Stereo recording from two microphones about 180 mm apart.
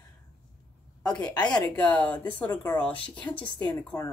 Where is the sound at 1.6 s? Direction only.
5° left (ahead or behind).